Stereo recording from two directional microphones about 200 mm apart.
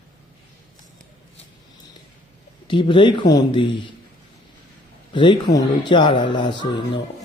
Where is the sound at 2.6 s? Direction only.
25° left (ahead or behind).